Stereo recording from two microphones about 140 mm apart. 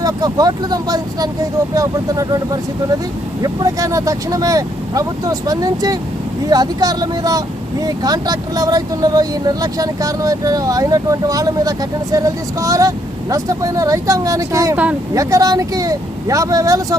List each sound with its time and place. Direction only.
0.0 s speech: 25° right (ahead or behind)